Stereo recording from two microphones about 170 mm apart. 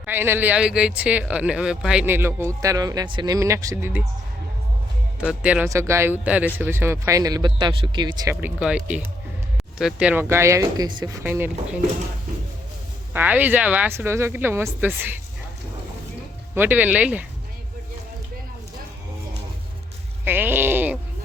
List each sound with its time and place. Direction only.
0.0 s speech: 10° right (ahead or behind)
5.2 s speech: 5° right (ahead or behind)
5.6 s speech: 15° right (ahead or behind)
8.4 s speech: 10° right (ahead or behind)
13.1 s speech: 10° right (ahead or behind)
16.6 s speech: 10° right (ahead or behind)
20.2 s speech: 10° right (ahead or behind)